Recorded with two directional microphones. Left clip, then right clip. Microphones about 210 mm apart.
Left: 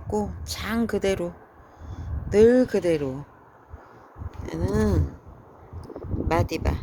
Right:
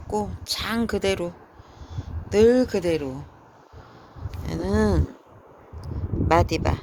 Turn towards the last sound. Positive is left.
turn(degrees=-5)  # may be behind; listen again after turning